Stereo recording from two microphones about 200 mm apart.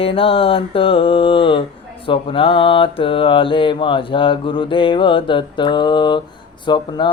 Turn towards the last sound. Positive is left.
turn(degrees=25)  # may be behind; listen again after turning